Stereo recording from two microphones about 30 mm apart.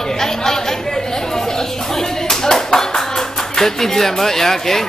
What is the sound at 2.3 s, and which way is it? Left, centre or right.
Clapping, centre.